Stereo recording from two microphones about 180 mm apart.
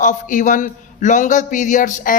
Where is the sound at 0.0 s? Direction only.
45° left (ahead or behind).